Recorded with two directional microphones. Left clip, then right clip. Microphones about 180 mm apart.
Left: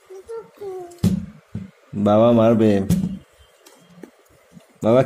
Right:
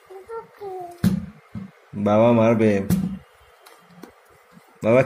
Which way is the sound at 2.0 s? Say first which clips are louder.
Left 2 dB; 15° left (ahead or behind).